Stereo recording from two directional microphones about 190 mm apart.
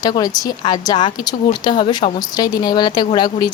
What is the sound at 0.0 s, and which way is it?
Speech, 20° left (ahead or behind).